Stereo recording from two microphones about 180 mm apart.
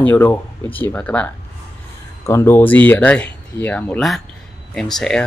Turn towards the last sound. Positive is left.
turn(degrees=5)  # may be behind; listen again after turning